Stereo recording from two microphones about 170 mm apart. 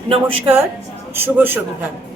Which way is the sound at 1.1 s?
10° right (ahead or behind).